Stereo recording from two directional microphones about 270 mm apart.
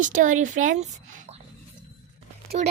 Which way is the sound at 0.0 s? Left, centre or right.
Right.